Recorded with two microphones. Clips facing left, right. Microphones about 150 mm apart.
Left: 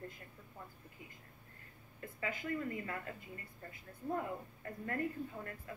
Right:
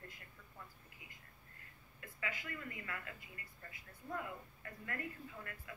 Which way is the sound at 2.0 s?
40° left (ahead or behind).